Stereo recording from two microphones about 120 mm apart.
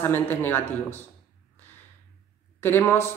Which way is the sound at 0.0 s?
15° left (ahead or behind).